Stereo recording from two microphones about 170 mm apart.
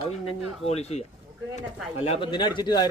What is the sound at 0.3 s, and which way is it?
A man's voice, 35° left (ahead or behind).